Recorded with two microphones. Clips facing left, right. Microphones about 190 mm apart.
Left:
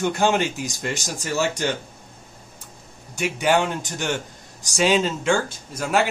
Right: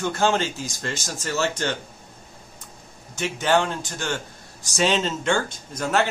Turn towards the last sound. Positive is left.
turn(degrees=10)  # may be behind; listen again after turning